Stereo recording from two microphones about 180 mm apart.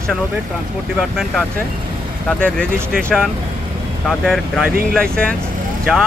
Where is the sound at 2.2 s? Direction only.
5° left (ahead or behind).